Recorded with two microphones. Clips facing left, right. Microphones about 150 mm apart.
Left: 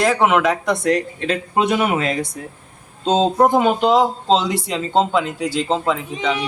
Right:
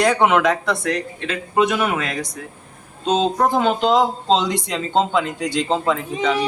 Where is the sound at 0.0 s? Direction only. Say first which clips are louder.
Even; centre (ahead or behind).